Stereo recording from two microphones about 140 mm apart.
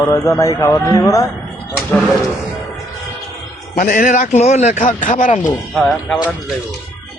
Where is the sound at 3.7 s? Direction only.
75° left (ahead or behind).